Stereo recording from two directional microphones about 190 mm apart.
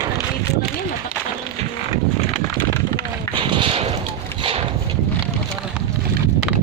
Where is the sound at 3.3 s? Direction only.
25° right (ahead or behind).